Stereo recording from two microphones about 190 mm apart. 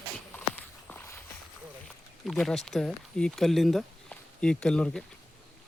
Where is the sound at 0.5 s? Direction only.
10° left (ahead or behind).